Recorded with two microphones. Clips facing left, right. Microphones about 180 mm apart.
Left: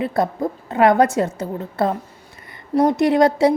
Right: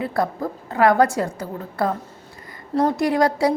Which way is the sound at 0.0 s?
20° left (ahead or behind).